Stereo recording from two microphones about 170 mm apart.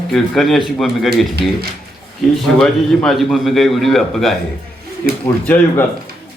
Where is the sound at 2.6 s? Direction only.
Centre (ahead or behind).